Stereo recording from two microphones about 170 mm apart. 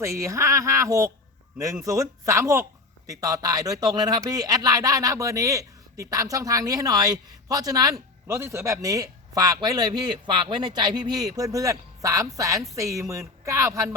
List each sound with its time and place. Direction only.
0.0 s speech: 15° right (ahead or behind)